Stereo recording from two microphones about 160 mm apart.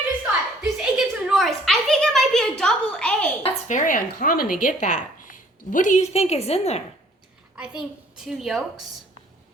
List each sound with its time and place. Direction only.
0.6 s a sound: 5° right (ahead or behind)
3.4 s speech: 55° left (ahead or behind)
7.5 s a child's voice: 5° right (ahead or behind)